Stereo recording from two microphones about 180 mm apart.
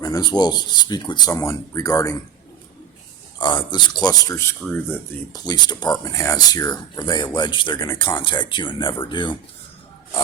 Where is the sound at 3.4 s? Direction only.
25° left (ahead or behind).